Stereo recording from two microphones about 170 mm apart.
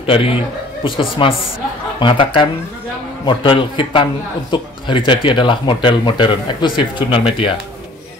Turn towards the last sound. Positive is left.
turn(degrees=30)  # may be behind; listen again after turning